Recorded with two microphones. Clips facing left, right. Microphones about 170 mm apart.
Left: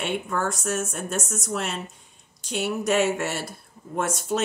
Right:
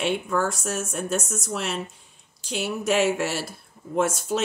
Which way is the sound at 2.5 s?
5° right (ahead or behind).